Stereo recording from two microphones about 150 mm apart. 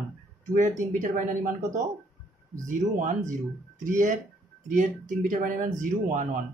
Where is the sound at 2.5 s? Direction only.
60° right (ahead or behind).